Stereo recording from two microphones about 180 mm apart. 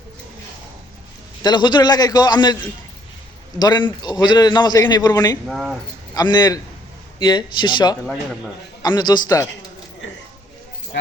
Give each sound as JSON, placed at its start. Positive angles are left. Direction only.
{"t": 1.4, "sound": "a man's voice", "side_deg": 25}
{"t": 3.6, "sound": "a man's voice", "side_deg": 25}
{"t": 5.5, "sound": "a man's voice", "side_deg": 0}
{"t": 6.1, "sound": "a man's voice", "side_deg": 20}
{"t": 8.0, "sound": "a man's voice", "side_deg": 0}
{"t": 8.8, "sound": "a man's voice", "side_deg": 25}